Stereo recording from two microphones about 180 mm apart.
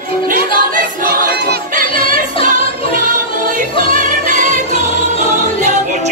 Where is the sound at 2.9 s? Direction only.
50° right (ahead or behind).